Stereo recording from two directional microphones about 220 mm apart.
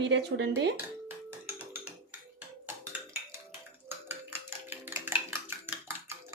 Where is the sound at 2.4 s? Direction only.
10° right (ahead or behind).